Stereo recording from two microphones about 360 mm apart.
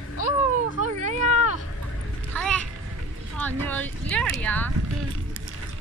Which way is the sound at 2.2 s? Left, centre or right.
Centre.